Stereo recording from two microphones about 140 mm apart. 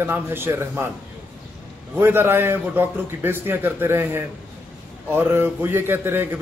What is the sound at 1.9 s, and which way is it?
A man's voice, 15° right (ahead or behind).